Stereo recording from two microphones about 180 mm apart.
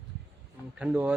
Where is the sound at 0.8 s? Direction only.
5° right (ahead or behind).